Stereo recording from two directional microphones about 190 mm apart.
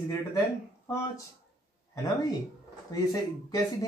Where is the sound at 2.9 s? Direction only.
20° left (ahead or behind).